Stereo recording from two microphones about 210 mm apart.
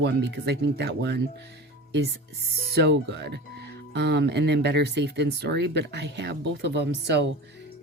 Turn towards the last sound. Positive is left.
turn(degrees=-55)  # may be behind; listen again after turning